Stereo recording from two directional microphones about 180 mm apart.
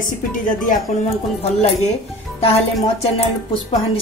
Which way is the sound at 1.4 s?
35° left (ahead or behind).